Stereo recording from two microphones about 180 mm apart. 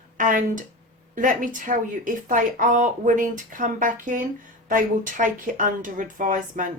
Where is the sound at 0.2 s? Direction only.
50° right (ahead or behind).